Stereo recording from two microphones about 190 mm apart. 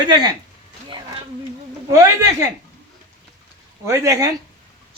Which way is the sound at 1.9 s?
15° right (ahead or behind).